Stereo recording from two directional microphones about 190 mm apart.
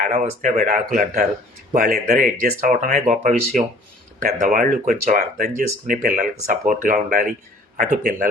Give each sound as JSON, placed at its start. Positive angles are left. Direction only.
{"t": 0.0, "sound": "speech", "side_deg": -40}